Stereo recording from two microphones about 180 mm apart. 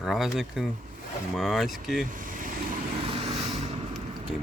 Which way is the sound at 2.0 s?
50° right (ahead or behind).